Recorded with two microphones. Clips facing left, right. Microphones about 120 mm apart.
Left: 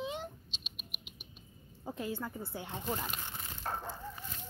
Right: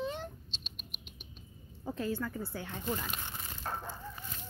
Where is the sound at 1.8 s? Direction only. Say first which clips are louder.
Right 3 dB; 15° left (ahead or behind).